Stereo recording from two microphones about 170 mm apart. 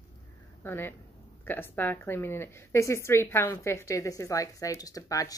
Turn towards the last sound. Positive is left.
turn(degrees=20)  # may be behind; listen again after turning